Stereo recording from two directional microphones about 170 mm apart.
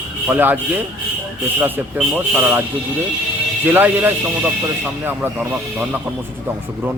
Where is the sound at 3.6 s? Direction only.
10° right (ahead or behind).